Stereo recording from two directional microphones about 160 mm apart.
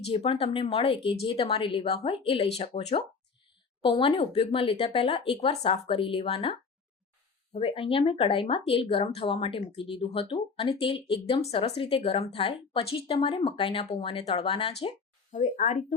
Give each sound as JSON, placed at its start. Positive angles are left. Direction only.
{"t": 0.1, "sound": "speech", "side_deg": 35}